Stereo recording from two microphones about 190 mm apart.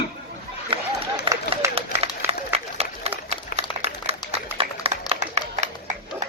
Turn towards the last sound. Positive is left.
turn(degrees=-35)  # may be behind; listen again after turning